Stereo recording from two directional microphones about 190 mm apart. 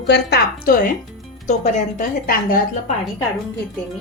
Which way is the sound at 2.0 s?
45° left (ahead or behind).